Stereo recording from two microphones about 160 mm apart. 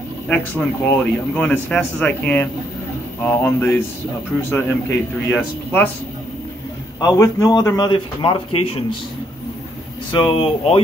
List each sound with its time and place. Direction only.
0.3 s a man's voice: 10° left (ahead or behind)
7.0 s a man's voice: 20° left (ahead or behind)
10.1 s speech: 35° left (ahead or behind)